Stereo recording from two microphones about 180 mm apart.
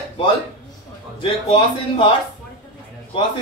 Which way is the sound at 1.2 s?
30° left (ahead or behind).